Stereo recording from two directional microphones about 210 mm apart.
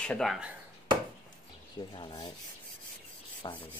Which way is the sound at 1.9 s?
20° left (ahead or behind).